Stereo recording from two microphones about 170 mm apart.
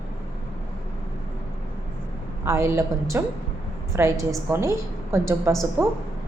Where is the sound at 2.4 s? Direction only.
15° right (ahead or behind).